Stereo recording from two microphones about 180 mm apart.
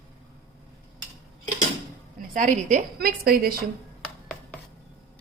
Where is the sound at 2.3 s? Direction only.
45° right (ahead or behind).